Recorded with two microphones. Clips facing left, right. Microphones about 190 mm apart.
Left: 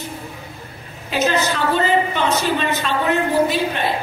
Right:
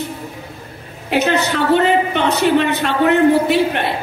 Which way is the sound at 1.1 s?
65° right (ahead or behind).